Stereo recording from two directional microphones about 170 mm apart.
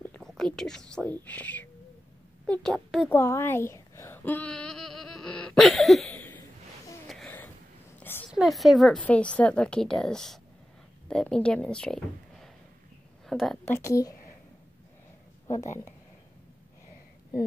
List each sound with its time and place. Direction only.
0.0 s a woman's voice: 5° left (ahead or behind)
3.1 s a sound: 15° left (ahead or behind)
8.3 s a woman's voice: centre (ahead or behind)
13.7 s speech: 15° left (ahead or behind)
15.5 s speech: 45° left (ahead or behind)